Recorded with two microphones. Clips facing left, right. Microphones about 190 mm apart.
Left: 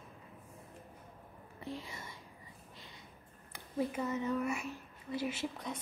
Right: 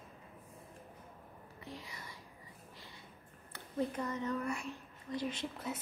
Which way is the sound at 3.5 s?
10° left (ahead or behind).